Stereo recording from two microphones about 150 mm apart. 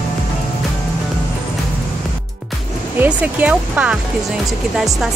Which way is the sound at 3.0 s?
10° right (ahead or behind).